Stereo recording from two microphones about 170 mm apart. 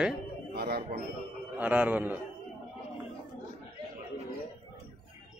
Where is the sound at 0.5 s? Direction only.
65° right (ahead or behind).